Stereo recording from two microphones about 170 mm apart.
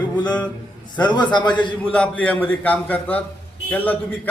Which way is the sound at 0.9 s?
25° left (ahead or behind).